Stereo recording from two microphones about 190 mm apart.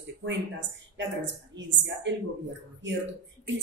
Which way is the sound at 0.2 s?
70° right (ahead or behind).